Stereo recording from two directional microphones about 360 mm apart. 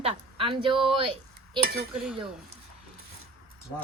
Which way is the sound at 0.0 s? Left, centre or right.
Centre.